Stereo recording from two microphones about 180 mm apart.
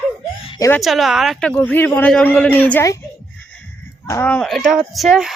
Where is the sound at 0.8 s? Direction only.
Centre (ahead or behind).